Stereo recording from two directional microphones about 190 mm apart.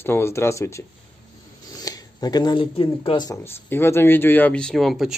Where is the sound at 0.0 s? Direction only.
15° left (ahead or behind).